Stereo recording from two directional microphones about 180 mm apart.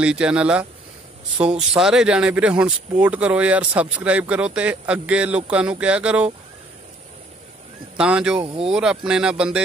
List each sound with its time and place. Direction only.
0.0 s speech: 5° right (ahead or behind)
1.8 s speech: 5° right (ahead or behind)
8.0 s speech: 5° right (ahead or behind)
8.5 s speech: 30° right (ahead or behind)
8.7 s speech: 5° right (ahead or behind)